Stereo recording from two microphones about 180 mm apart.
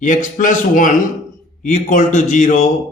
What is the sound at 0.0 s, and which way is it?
A man's voice, 45° left (ahead or behind).